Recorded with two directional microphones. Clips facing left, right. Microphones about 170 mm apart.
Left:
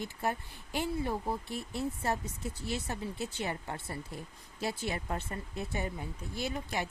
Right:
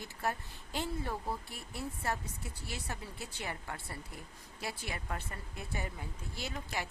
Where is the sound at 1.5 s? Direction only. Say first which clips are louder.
Left 7 dB; 25° left (ahead or behind).